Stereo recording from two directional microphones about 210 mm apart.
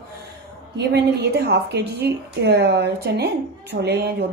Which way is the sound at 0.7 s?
50° right (ahead or behind).